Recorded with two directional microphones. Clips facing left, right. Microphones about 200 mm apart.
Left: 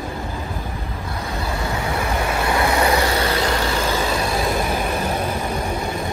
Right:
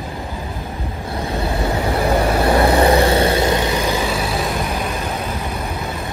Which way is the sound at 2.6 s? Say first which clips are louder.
Right 4 dB; 35° right (ahead or behind).